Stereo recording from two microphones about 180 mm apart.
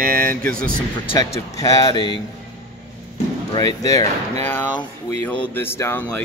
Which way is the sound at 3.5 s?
20° left (ahead or behind).